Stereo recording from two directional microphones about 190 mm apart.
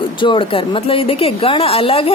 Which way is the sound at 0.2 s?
25° left (ahead or behind).